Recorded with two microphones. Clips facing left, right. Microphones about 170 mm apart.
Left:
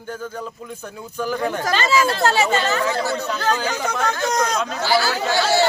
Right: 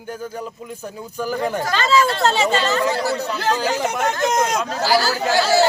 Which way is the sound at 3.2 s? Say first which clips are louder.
Right 1 dB; 35° right (ahead or behind).